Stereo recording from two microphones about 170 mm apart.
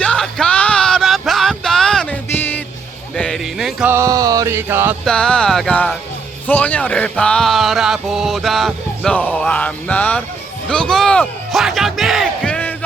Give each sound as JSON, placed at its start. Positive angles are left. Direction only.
{"t": 0.0, "sound": "a sound", "side_deg": 5}
{"t": 3.2, "sound": "music", "side_deg": 5}
{"t": 3.8, "sound": "music", "side_deg": -15}
{"t": 5.0, "sound": "speech", "side_deg": 5}
{"t": 10.7, "sound": "battle cry", "side_deg": 5}